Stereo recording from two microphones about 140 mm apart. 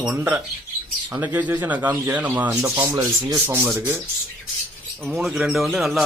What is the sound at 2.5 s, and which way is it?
Sanding, 20° right (ahead or behind).